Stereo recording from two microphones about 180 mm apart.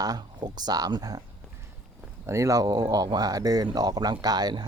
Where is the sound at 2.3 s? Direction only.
15° right (ahead or behind).